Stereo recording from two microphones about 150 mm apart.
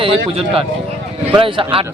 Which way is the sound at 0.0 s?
35° right (ahead or behind).